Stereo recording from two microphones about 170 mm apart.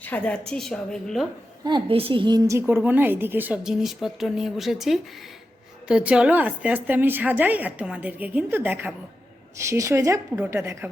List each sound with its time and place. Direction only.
0.0 s a woman's voice: 10° left (ahead or behind)
1.6 s a woman's voice: 30° right (ahead or behind)